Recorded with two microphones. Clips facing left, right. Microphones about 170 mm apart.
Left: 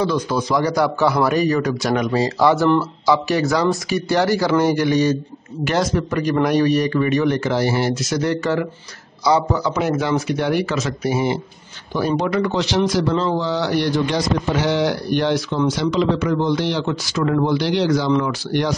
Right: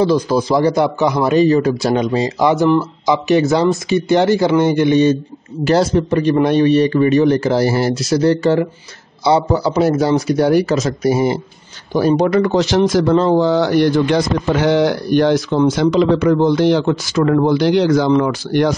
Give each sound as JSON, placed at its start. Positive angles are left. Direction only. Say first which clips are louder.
{"t": 0.0, "sound": "a man's voice", "louder": "right 6 dB", "side_deg": -30}